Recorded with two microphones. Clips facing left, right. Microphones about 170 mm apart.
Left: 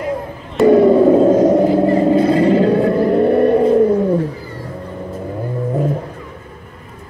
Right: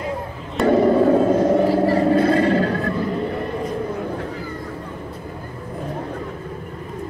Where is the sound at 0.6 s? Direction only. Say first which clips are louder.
Left 7 dB; centre (ahead or behind).